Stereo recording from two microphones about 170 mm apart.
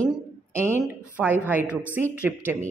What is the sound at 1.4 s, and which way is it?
Speech, 10° right (ahead or behind).